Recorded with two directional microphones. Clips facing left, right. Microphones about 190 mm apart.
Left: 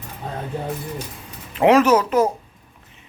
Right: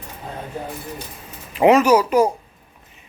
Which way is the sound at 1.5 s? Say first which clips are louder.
Right 1 dB; 5° right (ahead or behind).